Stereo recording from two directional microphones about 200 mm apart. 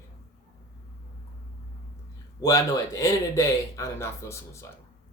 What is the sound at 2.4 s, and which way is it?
Speech, 15° left (ahead or behind).